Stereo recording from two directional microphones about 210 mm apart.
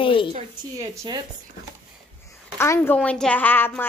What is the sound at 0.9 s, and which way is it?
Speech, 20° right (ahead or behind).